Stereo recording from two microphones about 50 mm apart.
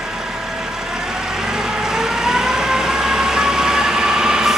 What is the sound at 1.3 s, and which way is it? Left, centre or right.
Vehicle, centre.